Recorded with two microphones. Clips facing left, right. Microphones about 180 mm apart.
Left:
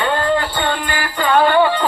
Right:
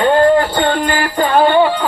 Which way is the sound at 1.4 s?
25° right (ahead or behind).